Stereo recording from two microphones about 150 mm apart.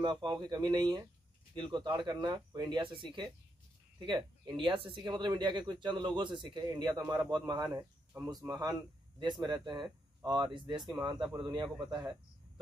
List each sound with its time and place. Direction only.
0.0 s speech: 30° right (ahead or behind)